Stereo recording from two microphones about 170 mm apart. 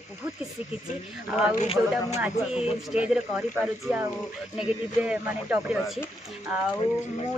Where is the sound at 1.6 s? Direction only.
40° left (ahead or behind).